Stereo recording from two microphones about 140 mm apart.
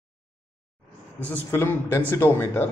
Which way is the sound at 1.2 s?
15° left (ahead or behind).